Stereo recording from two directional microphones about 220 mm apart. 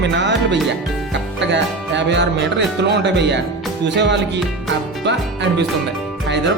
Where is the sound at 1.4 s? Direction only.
55° right (ahead or behind).